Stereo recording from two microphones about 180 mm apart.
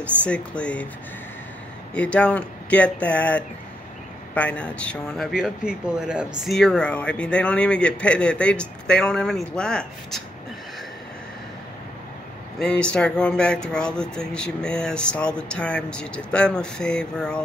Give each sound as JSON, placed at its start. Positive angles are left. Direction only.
{"t": 0.2, "sound": "speech", "side_deg": 5}
{"t": 2.0, "sound": "speech", "side_deg": 5}
{"t": 12.5, "sound": "speech", "side_deg": 5}